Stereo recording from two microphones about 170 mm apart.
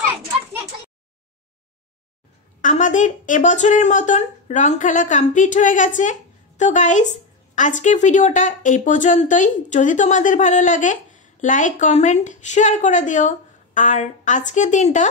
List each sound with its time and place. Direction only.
2.6 s speech: 45° left (ahead or behind)